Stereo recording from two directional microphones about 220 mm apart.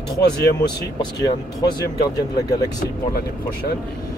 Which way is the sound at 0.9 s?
20° left (ahead or behind).